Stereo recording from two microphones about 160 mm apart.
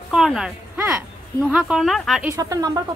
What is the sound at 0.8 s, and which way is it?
Speech, 15° right (ahead or behind).